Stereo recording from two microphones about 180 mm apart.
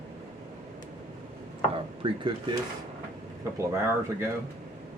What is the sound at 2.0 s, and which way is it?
Speech, 30° right (ahead or behind).